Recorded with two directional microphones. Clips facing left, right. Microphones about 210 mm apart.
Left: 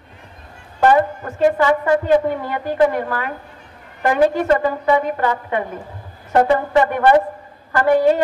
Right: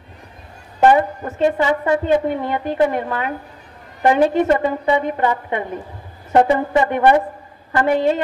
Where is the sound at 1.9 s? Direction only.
25° right (ahead or behind).